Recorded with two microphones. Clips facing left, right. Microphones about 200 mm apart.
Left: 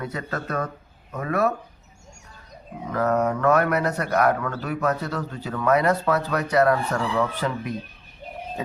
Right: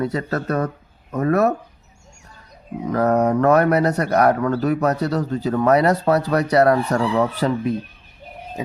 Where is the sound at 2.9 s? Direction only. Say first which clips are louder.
Right 5 dB; 35° right (ahead or behind).